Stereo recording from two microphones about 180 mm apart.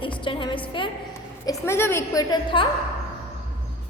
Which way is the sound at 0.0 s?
30° left (ahead or behind).